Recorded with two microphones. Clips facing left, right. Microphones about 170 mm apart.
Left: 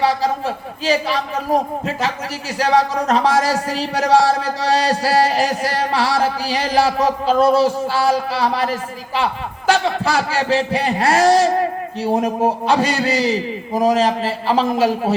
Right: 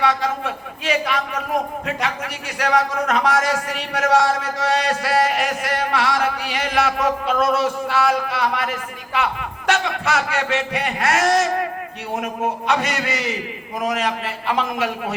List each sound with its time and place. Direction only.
0.0 s a man's voice: 30° left (ahead or behind)